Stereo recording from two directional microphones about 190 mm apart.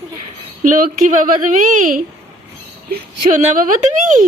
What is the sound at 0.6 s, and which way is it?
Speech, 45° right (ahead or behind).